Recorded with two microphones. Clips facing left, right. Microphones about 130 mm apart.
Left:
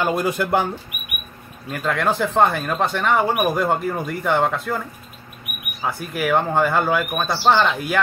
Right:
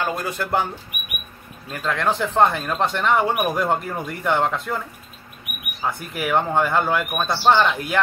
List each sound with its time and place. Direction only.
0.0 s speech: 15° left (ahead or behind)
1.8 s speech: 5° left (ahead or behind)